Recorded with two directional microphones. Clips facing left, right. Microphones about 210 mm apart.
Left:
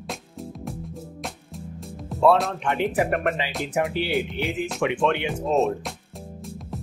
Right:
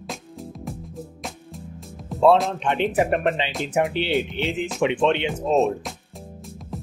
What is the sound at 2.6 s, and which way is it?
Speech, 20° right (ahead or behind).